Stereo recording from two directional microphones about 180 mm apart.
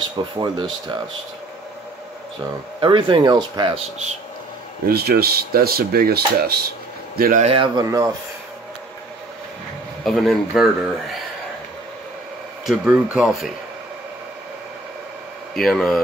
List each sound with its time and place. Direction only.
0.4 s speech: 25° right (ahead or behind)
2.8 s speech: 25° right (ahead or behind)
4.8 s speech: 60° right (ahead or behind)
7.4 s speech: 30° right (ahead or behind)
7.8 s speech: 20° right (ahead or behind)
10.0 s speech: centre (ahead or behind)
12.6 s speech: 5° right (ahead or behind)
15.6 s speech: centre (ahead or behind)